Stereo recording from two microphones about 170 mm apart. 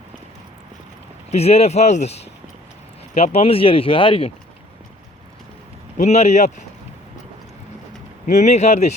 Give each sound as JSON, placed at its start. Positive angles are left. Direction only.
{"t": 1.3, "sound": "speech", "side_deg": 40}
{"t": 6.0, "sound": "speech", "side_deg": 40}
{"t": 8.4, "sound": "speech", "side_deg": 40}